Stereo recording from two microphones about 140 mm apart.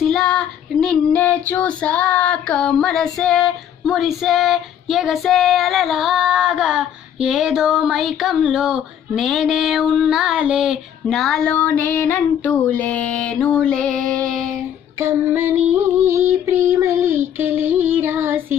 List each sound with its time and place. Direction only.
0.0 s child singing: centre (ahead or behind)
15.0 s female singing: 15° right (ahead or behind)